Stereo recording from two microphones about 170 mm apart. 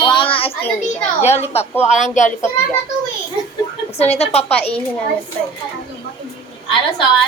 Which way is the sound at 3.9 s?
40° left (ahead or behind).